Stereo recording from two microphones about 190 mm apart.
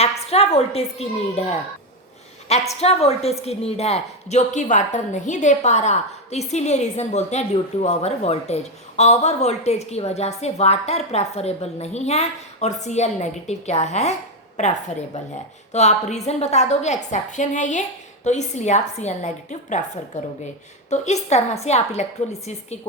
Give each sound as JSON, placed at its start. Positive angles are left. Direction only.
{"t": 0.0, "sound": "a woman's voice", "side_deg": 35}
{"t": 20.9, "sound": "a woman's voice", "side_deg": 35}